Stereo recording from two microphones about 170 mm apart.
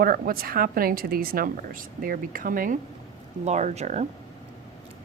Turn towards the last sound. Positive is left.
turn(degrees=-40)  # may be behind; listen again after turning